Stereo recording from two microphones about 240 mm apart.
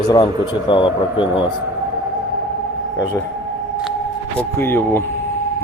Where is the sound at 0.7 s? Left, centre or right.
Centre.